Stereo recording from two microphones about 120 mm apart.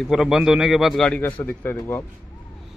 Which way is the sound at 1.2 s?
15° left (ahead or behind).